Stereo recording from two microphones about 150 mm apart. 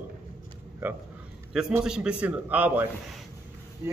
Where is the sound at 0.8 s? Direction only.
15° right (ahead or behind).